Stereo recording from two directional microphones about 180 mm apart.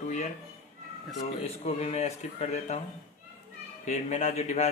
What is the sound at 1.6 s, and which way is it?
A man's voice, 35° left (ahead or behind).